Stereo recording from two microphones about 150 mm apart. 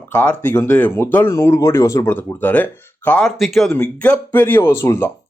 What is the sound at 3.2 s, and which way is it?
Speech, centre (ahead or behind).